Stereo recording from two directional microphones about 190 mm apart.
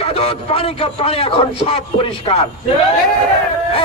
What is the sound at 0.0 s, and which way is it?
Speech, 30° left (ahead or behind).